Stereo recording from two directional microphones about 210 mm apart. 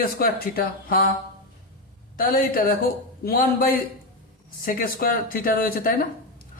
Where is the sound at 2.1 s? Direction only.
40° left (ahead or behind).